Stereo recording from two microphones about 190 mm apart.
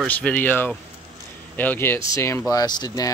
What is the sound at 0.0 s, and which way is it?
Speech, 5° left (ahead or behind).